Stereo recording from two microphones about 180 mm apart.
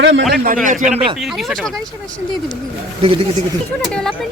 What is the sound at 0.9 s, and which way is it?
Speech, 30° right (ahead or behind).